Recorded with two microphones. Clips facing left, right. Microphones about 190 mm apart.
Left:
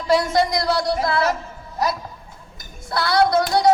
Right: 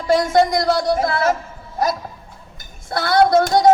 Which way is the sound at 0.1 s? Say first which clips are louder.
Right 3 dB; 50° right (ahead or behind).